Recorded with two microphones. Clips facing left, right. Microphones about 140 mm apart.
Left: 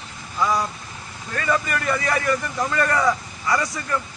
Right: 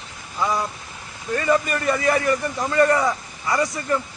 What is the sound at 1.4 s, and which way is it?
A man's voice, 25° right (ahead or behind).